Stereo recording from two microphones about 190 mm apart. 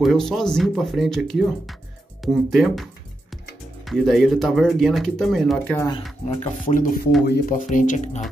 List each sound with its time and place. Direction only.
0.0 s speech: centre (ahead or behind)
5.8 s speech: 25° left (ahead or behind)
6.2 s speech: 40° left (ahead or behind)